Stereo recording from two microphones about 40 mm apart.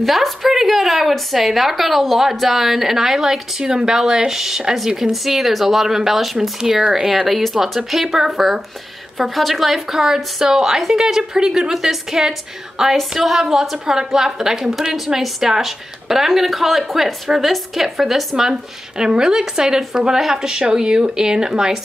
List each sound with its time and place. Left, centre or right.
0.0 s a woman's voice: centre
6.6 s speech: right
6.9 s a woman's voice: centre